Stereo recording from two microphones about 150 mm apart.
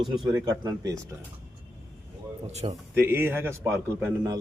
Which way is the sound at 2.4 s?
45° right (ahead or behind).